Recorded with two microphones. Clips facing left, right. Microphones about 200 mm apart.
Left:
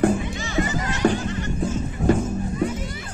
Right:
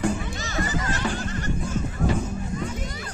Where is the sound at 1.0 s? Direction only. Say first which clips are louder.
Left 12 dB; 45° left (ahead or behind).